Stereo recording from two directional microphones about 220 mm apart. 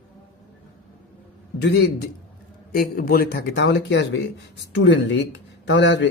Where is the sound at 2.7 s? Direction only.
40° left (ahead or behind).